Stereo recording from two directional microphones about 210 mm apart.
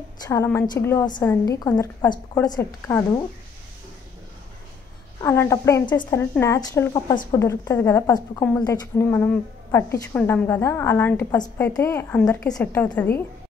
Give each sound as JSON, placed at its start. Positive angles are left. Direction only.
{"t": 0.2, "sound": "a woman's voice", "side_deg": 15}
{"t": 5.2, "sound": "a woman's voice", "side_deg": 10}